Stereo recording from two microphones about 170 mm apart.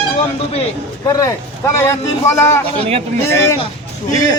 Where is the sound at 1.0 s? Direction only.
20° left (ahead or behind).